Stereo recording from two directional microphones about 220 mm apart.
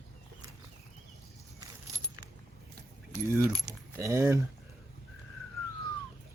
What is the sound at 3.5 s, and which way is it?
Speech, 15° right (ahead or behind).